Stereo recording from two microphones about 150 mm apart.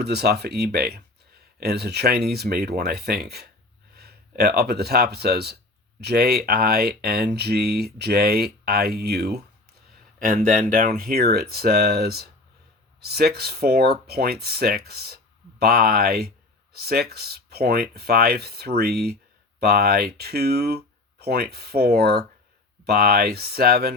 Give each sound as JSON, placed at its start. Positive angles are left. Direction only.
{"t": 0.0, "sound": "speech", "side_deg": -90}
{"t": 10.2, "sound": "speech", "side_deg": -70}